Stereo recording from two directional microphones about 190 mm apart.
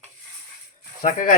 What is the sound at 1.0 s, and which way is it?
Speech, 45° left (ahead or behind).